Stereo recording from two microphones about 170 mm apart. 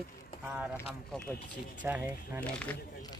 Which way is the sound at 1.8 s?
10° right (ahead or behind).